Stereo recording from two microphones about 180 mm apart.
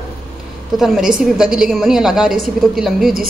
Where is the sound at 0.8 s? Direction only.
5° right (ahead or behind).